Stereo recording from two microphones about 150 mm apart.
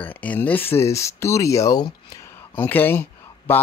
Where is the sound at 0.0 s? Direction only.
10° left (ahead or behind); by 2.0 s 25° left (ahead or behind).